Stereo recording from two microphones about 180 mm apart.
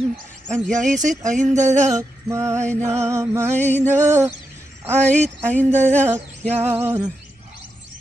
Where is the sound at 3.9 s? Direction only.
15° right (ahead or behind).